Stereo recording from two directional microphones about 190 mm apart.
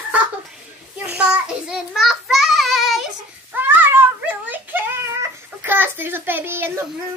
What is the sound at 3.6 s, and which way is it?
Cat, 10° right (ahead or behind).